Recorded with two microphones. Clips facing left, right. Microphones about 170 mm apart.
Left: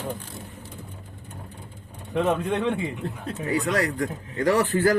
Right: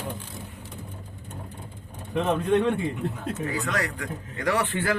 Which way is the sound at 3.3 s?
35° left (ahead or behind).